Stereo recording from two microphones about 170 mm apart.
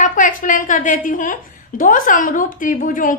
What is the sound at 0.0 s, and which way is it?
A woman's voice, 50° left (ahead or behind).